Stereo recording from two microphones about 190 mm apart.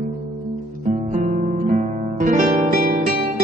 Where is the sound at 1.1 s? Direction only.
40° right (ahead or behind).